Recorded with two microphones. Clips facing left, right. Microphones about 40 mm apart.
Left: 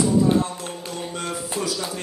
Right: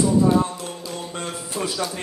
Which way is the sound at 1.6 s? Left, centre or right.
Right.